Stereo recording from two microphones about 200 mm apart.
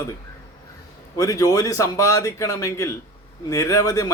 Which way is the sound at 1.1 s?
15° left (ahead or behind).